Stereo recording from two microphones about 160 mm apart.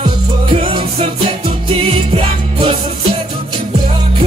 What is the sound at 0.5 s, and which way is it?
Music, 35° right (ahead or behind).